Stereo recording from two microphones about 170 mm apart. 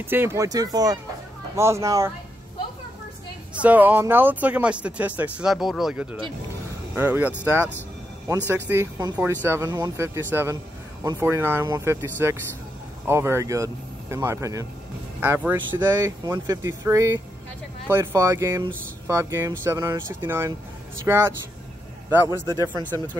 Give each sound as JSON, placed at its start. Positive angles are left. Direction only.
{"t": 0.0, "sound": "speech", "side_deg": -15}
{"t": 3.6, "sound": "speech", "side_deg": -10}
{"t": 8.5, "sound": "speech", "side_deg": -10}